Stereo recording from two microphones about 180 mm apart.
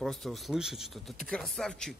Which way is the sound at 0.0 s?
Centre (ahead or behind).